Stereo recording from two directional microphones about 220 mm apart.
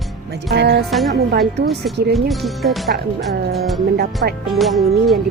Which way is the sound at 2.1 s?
Centre (ahead or behind).